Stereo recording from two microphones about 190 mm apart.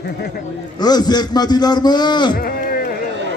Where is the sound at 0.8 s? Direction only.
20° left (ahead or behind).